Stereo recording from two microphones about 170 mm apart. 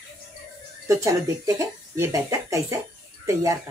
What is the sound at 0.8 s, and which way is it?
Speech, 20° right (ahead or behind).